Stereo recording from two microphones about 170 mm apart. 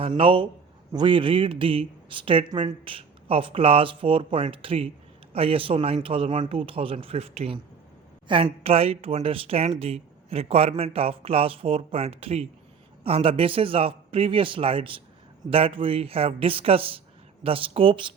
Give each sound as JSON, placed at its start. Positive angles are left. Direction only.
{"t": 0.0, "sound": "speech", "side_deg": -30}